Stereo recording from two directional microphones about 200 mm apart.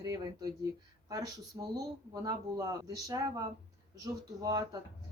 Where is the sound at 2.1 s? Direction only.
20° right (ahead or behind).